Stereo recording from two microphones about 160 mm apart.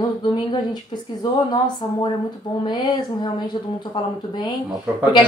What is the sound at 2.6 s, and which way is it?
Speech, 30° left (ahead or behind).